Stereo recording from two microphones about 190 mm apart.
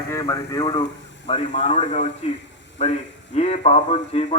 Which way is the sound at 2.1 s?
70° left (ahead or behind).